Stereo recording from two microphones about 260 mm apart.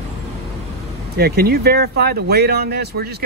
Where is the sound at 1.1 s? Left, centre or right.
Right.